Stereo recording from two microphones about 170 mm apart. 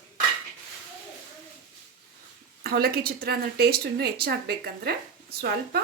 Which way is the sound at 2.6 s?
65° right (ahead or behind).